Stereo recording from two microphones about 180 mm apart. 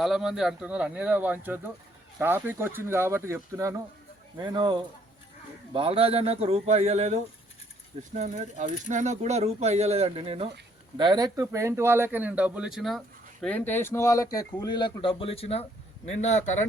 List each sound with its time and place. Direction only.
0.0 s speech: centre (ahead or behind)
13.4 s a man's voice: 10° left (ahead or behind); by 16.6 s 40° left (ahead or behind)